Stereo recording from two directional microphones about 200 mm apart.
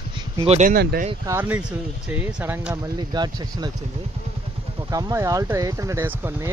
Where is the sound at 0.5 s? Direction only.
40° right (ahead or behind).